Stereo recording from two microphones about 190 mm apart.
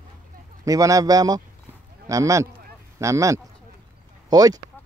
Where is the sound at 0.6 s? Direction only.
15° right (ahead or behind).